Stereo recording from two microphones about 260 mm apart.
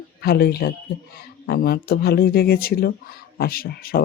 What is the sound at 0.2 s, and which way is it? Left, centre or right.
Speech, left.